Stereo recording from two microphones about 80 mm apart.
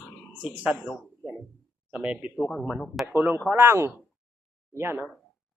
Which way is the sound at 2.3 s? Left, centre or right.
Centre.